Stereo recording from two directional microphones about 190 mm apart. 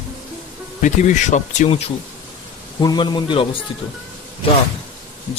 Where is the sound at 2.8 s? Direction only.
20° left (ahead or behind).